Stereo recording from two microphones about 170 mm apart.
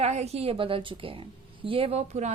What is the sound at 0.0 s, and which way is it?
A woman's voice, 40° right (ahead or behind).